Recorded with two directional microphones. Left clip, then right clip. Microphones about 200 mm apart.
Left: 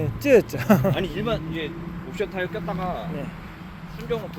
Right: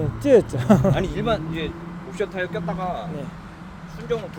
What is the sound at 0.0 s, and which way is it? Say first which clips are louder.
Speech: right 1 dB; centre (ahead or behind).